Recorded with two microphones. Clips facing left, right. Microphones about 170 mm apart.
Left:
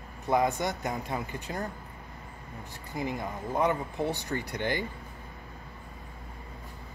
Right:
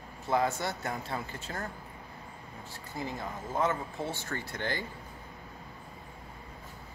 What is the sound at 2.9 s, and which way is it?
Speech, 15° left (ahead or behind).